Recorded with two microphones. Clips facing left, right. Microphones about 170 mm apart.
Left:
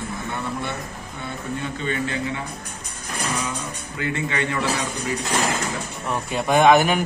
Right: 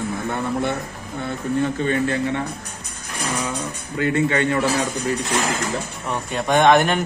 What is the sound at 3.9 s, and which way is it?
Speech, 35° right (ahead or behind).